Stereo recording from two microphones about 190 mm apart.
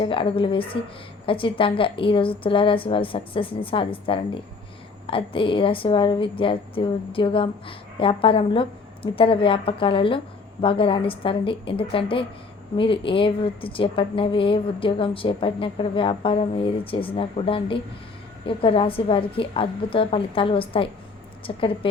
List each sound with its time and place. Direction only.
0.0 s a woman's voice: 30° left (ahead or behind)